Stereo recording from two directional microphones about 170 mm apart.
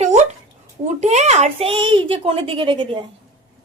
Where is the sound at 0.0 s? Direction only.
45° right (ahead or behind).